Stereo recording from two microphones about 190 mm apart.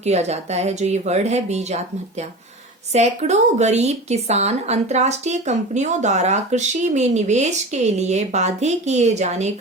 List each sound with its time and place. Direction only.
0.0 s a woman's voice: 35° right (ahead or behind)
2.9 s a woman's voice: 35° right (ahead or behind)